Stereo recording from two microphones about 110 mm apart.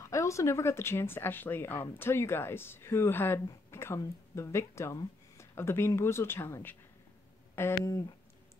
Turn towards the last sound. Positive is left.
turn(degrees=25)  # may be behind; listen again after turning